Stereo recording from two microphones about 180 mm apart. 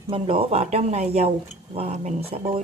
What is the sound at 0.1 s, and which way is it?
Speech, 30° right (ahead or behind).